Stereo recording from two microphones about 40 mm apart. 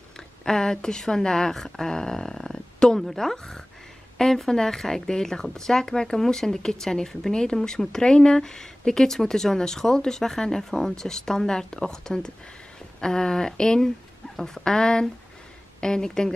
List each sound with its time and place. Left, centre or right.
0.5 s speech: centre